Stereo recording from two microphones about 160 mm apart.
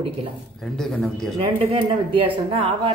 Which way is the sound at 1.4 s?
35° right (ahead or behind).